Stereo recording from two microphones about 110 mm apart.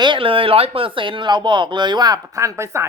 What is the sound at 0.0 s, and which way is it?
Speech, 50° right (ahead or behind).